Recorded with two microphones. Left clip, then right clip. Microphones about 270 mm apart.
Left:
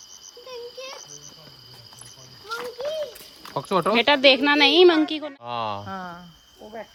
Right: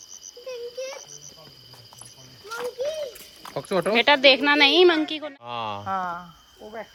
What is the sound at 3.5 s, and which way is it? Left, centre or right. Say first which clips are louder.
Speech: left 2 dB; left.